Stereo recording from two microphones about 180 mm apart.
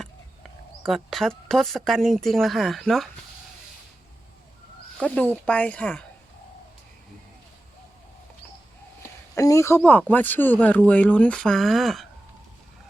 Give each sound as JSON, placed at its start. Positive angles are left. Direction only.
{"t": 0.9, "sound": "speech", "side_deg": 0}
{"t": 4.9, "sound": "speech", "side_deg": 5}
{"t": 9.3, "sound": "speech", "side_deg": 15}